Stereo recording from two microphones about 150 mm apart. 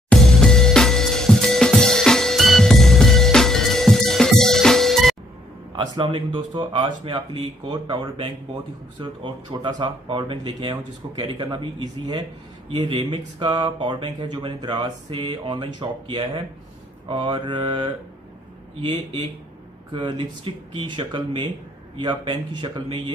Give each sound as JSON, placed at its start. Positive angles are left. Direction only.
{"t": 0.1, "sound": "music", "side_deg": 5}
{"t": 5.8, "sound": "speech", "side_deg": -35}